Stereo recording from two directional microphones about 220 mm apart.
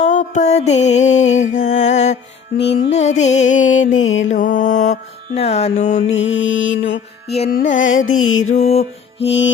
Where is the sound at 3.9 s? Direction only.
60° left (ahead or behind).